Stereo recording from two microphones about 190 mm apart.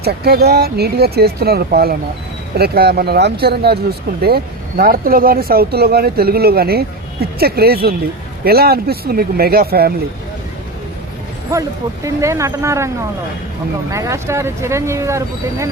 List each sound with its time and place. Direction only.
0.0 s speech: 55° right (ahead or behind)
12.0 s speech: 15° right (ahead or behind)
13.9 s speech: 15° right (ahead or behind)